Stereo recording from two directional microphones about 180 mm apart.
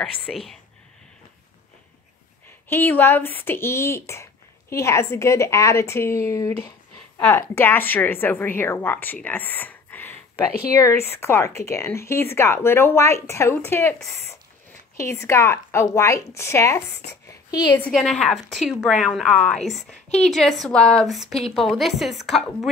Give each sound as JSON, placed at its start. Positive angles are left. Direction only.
{"t": 0.3, "sound": "a woman's voice", "side_deg": 0}
{"t": 2.7, "sound": "speech", "side_deg": 15}
{"t": 17.3, "sound": "a sound", "side_deg": 20}
{"t": 17.9, "sound": "a woman's voice", "side_deg": 0}